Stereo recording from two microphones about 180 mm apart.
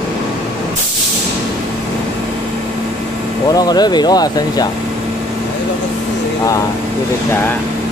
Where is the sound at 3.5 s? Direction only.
20° left (ahead or behind).